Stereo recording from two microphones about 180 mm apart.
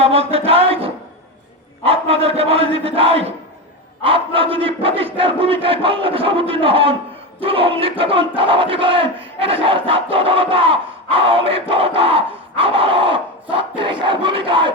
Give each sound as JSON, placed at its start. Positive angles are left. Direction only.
{"t": 0.0, "sound": "a sound", "side_deg": -35}
{"t": 1.8, "sound": "dog", "side_deg": -35}
{"t": 5.1, "sound": "battle cry", "side_deg": -30}
{"t": 7.3, "sound": "dog", "side_deg": -30}
{"t": 8.4, "sound": "battle cry", "side_deg": -30}